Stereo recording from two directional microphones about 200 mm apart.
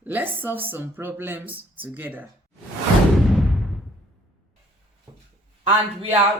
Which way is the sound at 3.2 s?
Centre (ahead or behind).